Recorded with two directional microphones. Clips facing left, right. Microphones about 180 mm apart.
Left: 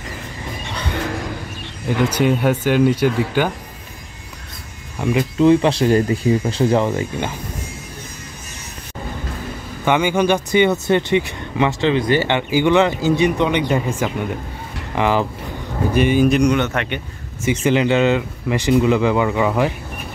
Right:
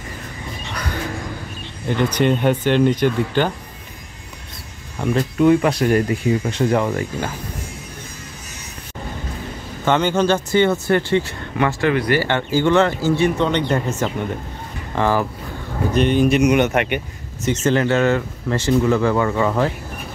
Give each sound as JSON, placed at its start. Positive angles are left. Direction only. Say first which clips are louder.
{"t": 1.9, "sound": "speech", "louder": "left 1 dB", "side_deg": 10}
{"t": 5.4, "sound": "speech", "louder": "left 1 dB", "side_deg": 25}
{"t": 9.8, "sound": "speech", "louder": "left 1 dB", "side_deg": 10}
{"t": 16.5, "sound": "speech", "louder": "right 3 dB", "side_deg": -15}
{"t": 17.5, "sound": "speech", "louder": "left 1 dB", "side_deg": 15}